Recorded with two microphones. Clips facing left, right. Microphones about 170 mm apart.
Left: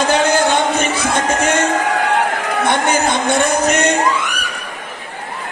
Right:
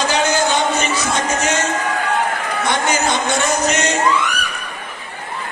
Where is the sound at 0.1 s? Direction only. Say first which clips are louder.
Left 3 dB; 55° left (ahead or behind).